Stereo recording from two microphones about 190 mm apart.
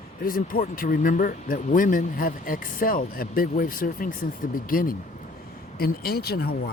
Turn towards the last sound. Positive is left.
turn(degrees=55)  # may be behind; listen again after turning